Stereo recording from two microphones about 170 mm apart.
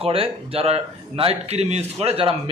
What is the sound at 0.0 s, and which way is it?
Speech, 35° right (ahead or behind).